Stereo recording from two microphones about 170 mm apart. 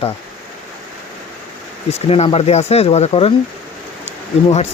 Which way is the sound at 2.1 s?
35° left (ahead or behind).